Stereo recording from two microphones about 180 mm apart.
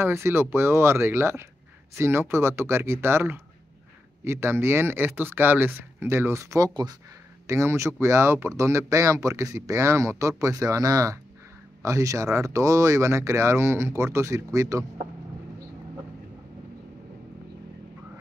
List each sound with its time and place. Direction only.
0.0 s speech: 15° right (ahead or behind)